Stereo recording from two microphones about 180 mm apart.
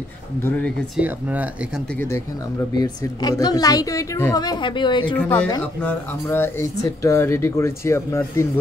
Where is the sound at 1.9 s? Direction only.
10° left (ahead or behind).